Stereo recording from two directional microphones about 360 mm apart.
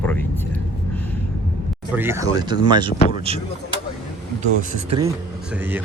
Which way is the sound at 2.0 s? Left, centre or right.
Centre.